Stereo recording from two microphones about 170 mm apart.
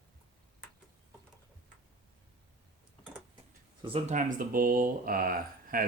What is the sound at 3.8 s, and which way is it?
Speech, 40° right (ahead or behind).